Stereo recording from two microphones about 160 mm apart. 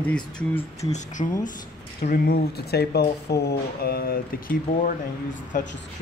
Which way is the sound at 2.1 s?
75° left (ahead or behind).